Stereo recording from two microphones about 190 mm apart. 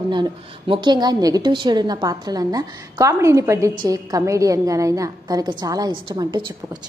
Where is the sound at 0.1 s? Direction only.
25° right (ahead or behind).